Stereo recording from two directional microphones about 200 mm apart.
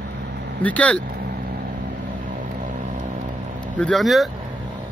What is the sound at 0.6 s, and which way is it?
Speech, 5° left (ahead or behind).